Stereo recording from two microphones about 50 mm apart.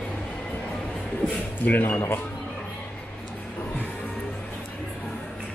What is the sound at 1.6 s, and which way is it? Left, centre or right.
Speech, left.